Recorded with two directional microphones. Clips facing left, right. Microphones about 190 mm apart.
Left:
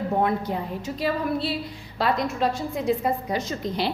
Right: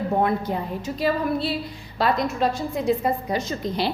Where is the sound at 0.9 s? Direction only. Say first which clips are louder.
Right 2 dB; 45° right (ahead or behind).